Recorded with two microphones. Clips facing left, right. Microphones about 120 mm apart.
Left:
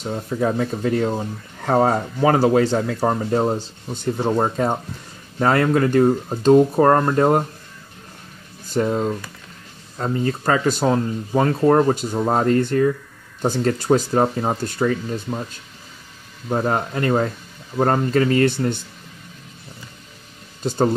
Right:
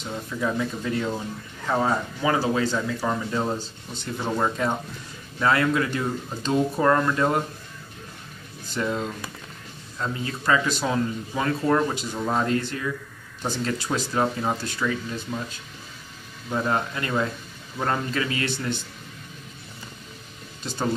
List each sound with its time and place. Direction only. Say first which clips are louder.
0.0 s speech: left 6 dB; 40° left (ahead or behind)
4.2 s speech: left 4 dB; 35° left (ahead or behind)
5.4 s speech: left 5 dB; 45° left (ahead or behind)
8.7 s speech: left 7 dB; 40° left (ahead or behind)
16.4 s speech: left 4 dB; 40° left (ahead or behind)
20.6 s speech: left 8 dB; 45° left (ahead or behind)